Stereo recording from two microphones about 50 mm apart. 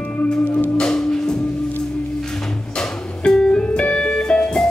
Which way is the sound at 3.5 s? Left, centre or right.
Left.